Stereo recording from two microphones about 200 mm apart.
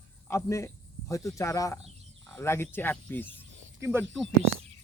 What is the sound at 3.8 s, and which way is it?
Speech, 10° right (ahead or behind).